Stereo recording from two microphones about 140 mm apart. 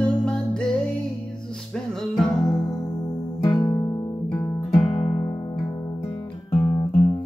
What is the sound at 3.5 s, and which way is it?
Music, 30° left (ahead or behind).